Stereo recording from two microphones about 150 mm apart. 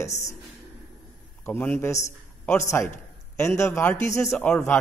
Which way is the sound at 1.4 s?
15° left (ahead or behind).